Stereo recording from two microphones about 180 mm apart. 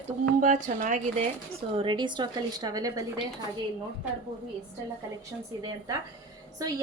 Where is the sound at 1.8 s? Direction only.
25° right (ahead or behind).